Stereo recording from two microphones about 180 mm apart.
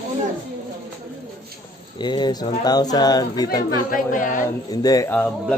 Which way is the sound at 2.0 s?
25° left (ahead or behind).